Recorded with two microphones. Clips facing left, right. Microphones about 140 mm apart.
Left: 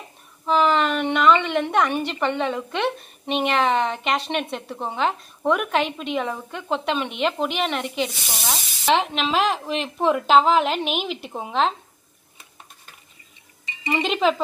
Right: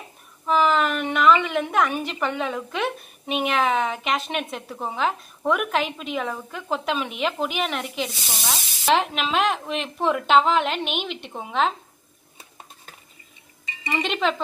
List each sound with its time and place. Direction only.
0.5 s a woman's voice: centre (ahead or behind)
13.8 s a woman's voice: 5° left (ahead or behind)